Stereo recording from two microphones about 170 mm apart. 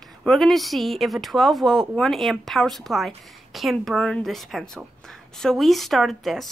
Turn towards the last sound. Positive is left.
turn(degrees=0)  # may be behind; listen again after turning